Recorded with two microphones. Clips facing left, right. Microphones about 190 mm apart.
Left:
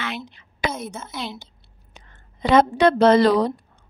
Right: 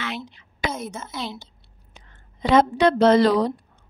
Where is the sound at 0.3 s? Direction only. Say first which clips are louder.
Left 1 dB; 60° left (ahead or behind).